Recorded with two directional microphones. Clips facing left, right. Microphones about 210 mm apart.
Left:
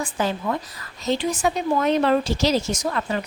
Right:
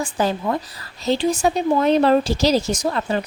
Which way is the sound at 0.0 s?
35° right (ahead or behind).